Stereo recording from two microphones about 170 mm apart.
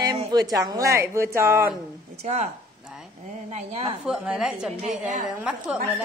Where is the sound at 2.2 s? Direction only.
40° right (ahead or behind).